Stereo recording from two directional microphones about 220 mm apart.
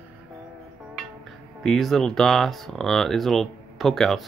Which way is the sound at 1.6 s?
Centre (ahead or behind).